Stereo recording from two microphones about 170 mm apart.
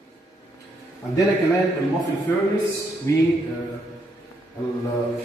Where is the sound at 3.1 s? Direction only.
20° left (ahead or behind).